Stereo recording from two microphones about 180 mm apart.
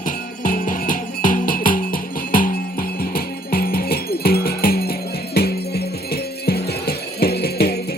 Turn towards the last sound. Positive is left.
turn(degrees=60)  # may be behind; listen again after turning